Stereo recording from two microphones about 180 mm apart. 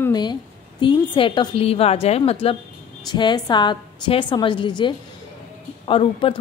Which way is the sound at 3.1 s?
25° left (ahead or behind).